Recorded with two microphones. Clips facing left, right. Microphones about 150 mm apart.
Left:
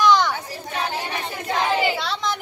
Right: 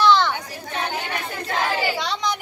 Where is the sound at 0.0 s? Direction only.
15° left (ahead or behind).